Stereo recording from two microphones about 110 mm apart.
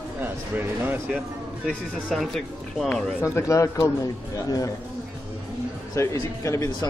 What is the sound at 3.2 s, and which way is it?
A man's voice, 25° left (ahead or behind).